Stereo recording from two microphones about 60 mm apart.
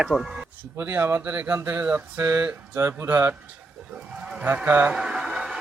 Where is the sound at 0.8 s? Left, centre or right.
Right.